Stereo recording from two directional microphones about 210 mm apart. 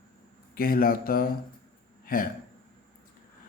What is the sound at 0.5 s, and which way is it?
Speech, 45° left (ahead or behind).